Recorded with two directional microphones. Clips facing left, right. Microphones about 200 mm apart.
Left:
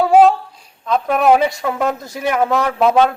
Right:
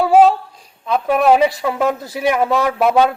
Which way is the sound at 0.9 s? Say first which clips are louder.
Even; 10° right (ahead or behind).